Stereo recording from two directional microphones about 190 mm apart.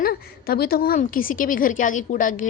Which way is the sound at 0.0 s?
50° left (ahead or behind).